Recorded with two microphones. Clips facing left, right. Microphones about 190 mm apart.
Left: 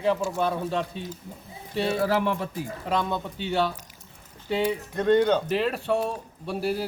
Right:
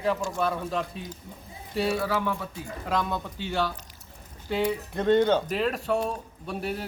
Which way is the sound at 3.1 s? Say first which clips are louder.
Left 3 dB; 25° left (ahead or behind).